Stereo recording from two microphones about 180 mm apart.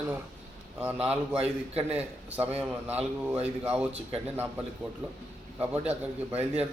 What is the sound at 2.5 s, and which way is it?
A man's voice, 10° right (ahead or behind).